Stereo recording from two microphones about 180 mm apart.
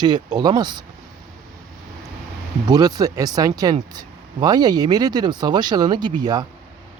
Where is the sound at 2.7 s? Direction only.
20° right (ahead or behind).